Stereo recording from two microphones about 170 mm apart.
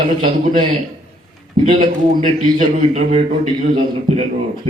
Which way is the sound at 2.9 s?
30° right (ahead or behind).